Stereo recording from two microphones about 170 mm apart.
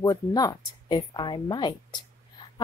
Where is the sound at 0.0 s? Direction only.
20° left (ahead or behind).